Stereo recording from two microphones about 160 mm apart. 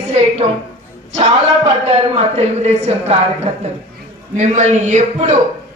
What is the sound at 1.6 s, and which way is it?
A man's voice, 40° right (ahead or behind).